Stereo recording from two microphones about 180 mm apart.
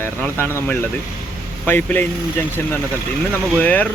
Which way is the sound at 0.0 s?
10° left (ahead or behind).